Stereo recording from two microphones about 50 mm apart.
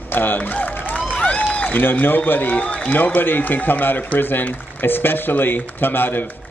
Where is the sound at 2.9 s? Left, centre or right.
Left.